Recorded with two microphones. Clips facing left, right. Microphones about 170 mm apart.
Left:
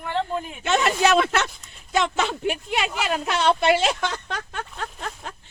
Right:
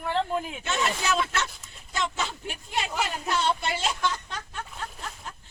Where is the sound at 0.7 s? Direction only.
75° left (ahead or behind).